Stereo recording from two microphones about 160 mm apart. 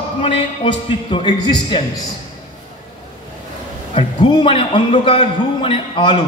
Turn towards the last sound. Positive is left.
turn(degrees=35)  # may be behind; listen again after turning